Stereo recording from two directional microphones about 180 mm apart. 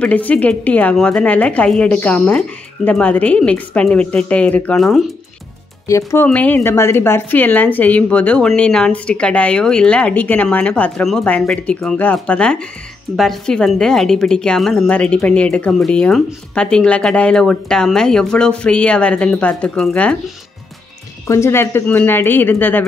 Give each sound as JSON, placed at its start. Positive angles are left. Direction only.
{"t": 0.0, "sound": "a woman's voice", "side_deg": 10}
{"t": 5.9, "sound": "a woman's voice", "side_deg": 15}
{"t": 21.3, "sound": "a woman's voice", "side_deg": 15}